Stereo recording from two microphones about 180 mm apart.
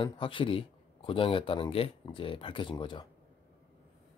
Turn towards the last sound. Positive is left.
turn(degrees=25)  # may be behind; listen again after turning